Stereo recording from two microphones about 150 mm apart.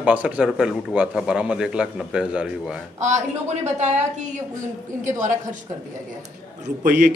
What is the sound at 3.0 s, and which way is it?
A woman's voice, 50° right (ahead or behind).